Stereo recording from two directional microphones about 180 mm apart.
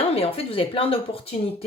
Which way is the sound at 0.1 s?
30° left (ahead or behind).